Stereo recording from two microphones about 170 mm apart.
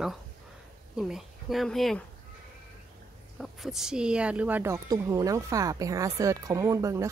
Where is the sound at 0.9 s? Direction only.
Centre (ahead or behind).